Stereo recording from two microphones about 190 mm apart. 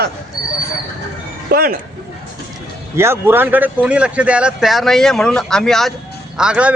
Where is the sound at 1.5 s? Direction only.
55° right (ahead or behind).